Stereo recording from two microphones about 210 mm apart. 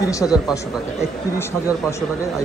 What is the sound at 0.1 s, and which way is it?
Speech, 15° left (ahead or behind).